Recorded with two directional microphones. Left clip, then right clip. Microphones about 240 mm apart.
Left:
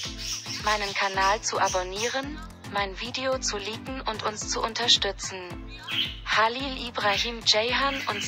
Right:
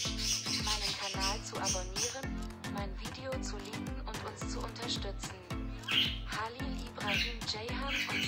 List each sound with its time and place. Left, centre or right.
0.7 s speech: left
6.2 s speech: left